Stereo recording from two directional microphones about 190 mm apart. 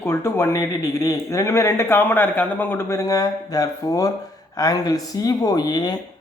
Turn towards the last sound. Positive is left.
turn(degrees=20)  # may be behind; listen again after turning